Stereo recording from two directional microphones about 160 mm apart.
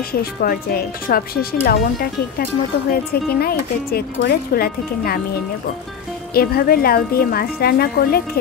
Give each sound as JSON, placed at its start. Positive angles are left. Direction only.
{"t": 0.1, "sound": "speech", "side_deg": 65}
{"t": 2.9, "sound": "speech", "side_deg": 75}
{"t": 6.3, "sound": "speech", "side_deg": 70}